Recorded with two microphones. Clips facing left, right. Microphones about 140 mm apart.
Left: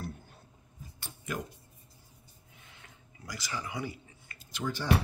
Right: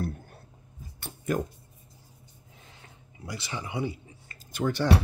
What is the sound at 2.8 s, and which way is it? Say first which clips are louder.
Drip: right 7 dB; 25° right (ahead or behind).